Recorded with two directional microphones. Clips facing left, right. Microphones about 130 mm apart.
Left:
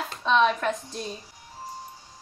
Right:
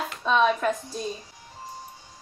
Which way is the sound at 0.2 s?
5° right (ahead or behind).